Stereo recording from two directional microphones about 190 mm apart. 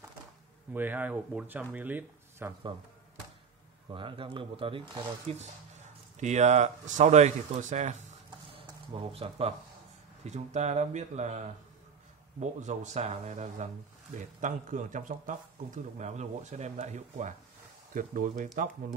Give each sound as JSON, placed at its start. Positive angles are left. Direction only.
{"t": 0.7, "sound": "speech", "side_deg": -10}
{"t": 3.9, "sound": "speech", "side_deg": -25}
{"t": 8.5, "sound": "a sound", "side_deg": -30}
{"t": 10.2, "sound": "speech", "side_deg": -35}